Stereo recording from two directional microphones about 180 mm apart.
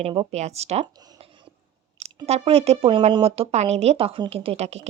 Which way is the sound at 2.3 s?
35° right (ahead or behind).